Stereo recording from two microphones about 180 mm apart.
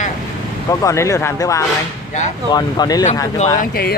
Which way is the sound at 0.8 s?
15° left (ahead or behind).